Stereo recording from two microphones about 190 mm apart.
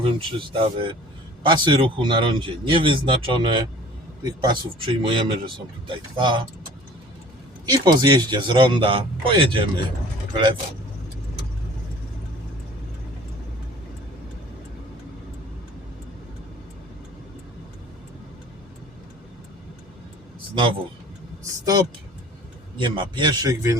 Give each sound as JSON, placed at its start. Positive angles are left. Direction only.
{"t": 0.0, "sound": "speech", "side_deg": -30}
{"t": 7.6, "sound": "speech", "side_deg": -20}
{"t": 21.6, "sound": "speech", "side_deg": -20}